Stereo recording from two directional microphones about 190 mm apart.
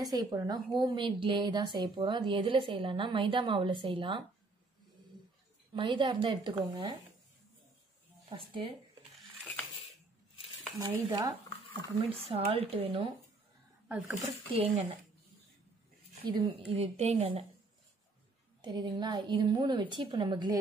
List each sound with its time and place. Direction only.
0.0 s a woman's voice: 20° right (ahead or behind)
5.7 s a woman's voice: 25° right (ahead or behind)
8.3 s a woman's voice: 30° right (ahead or behind)
10.8 s a woman's voice: 20° right (ahead or behind)
13.8 s speech: 10° right (ahead or behind)
14.5 s a woman's voice: 30° right (ahead or behind)
16.3 s a woman's voice: 30° right (ahead or behind)
18.6 s a woman's voice: 25° right (ahead or behind)